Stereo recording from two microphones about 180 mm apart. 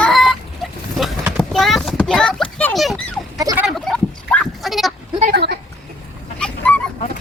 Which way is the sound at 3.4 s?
20° right (ahead or behind).